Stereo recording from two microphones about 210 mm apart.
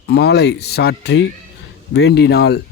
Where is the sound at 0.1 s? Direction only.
50° left (ahead or behind).